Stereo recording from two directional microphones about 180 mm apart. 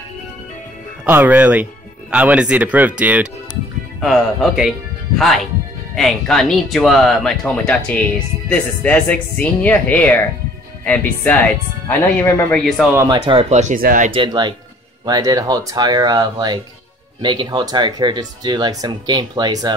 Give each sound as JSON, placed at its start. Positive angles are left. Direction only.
{"t": 1.0, "sound": "speech", "side_deg": -10}
{"t": 11.9, "sound": "speech", "side_deg": 10}
{"t": 12.9, "sound": "speech", "side_deg": -15}
{"t": 13.2, "sound": "speech", "side_deg": -35}
{"t": 13.7, "sound": "speech", "side_deg": -50}
{"t": 14.1, "sound": "speech", "side_deg": -25}